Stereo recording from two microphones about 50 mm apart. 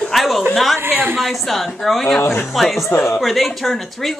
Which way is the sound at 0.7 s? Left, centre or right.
Right.